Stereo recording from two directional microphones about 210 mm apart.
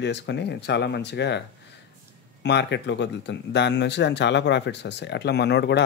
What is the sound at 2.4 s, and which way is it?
Speech, 55° left (ahead or behind).